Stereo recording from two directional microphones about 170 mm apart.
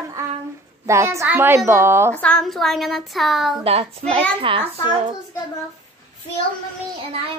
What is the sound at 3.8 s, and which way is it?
Speech, 35° right (ahead or behind).